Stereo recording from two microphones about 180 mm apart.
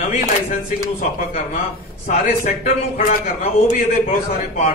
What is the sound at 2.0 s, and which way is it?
A man's voice, 45° left (ahead or behind).